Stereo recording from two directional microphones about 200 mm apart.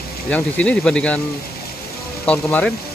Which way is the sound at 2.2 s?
5° left (ahead or behind).